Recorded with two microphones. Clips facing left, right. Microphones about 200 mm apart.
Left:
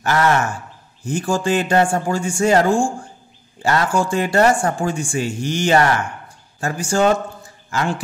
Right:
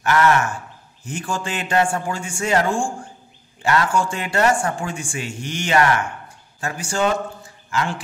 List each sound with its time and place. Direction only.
0.0 s speech: 35° left (ahead or behind)